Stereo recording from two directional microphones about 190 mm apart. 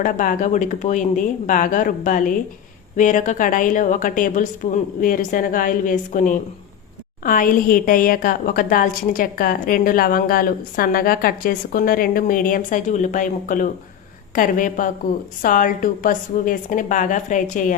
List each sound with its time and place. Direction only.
0.0 s a woman's voice: 40° left (ahead or behind)